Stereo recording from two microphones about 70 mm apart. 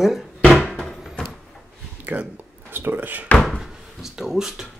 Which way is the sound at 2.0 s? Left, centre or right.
Right.